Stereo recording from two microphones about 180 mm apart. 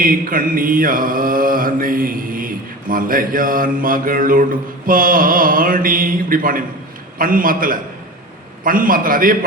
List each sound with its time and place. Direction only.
0.0 s mantra: 50° right (ahead or behind)